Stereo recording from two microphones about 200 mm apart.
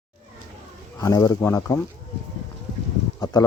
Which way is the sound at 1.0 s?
15° left (ahead or behind).